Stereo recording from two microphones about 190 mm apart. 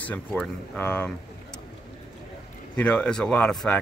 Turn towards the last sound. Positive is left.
turn(degrees=5)  # may be behind; listen again after turning